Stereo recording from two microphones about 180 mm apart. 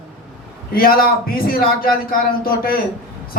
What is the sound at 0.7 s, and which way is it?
A man's voice, 55° left (ahead or behind).